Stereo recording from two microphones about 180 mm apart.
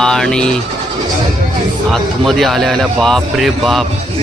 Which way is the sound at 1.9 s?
Centre (ahead or behind).